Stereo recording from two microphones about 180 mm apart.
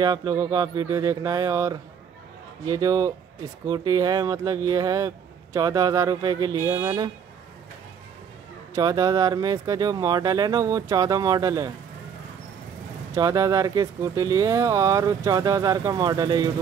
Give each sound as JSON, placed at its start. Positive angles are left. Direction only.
{"t": 0.0, "sound": "speech", "side_deg": -20}
{"t": 8.7, "sound": "speech", "side_deg": -20}
{"t": 13.1, "sound": "speech", "side_deg": -20}